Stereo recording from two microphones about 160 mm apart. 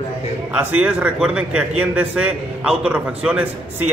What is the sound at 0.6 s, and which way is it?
A man's voice, 10° right (ahead or behind).